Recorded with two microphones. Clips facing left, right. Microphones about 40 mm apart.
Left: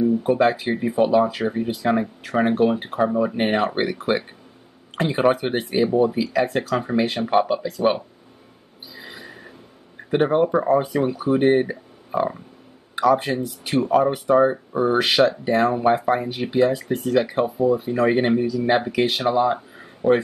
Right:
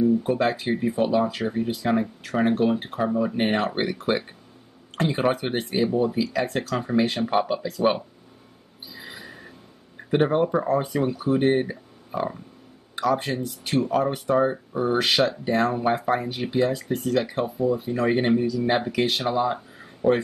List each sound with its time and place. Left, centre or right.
0.0 s speech: centre
8.9 s a sound: centre
9.9 s speech: centre